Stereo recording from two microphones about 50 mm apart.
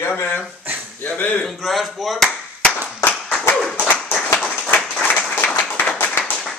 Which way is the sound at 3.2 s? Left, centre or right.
Centre.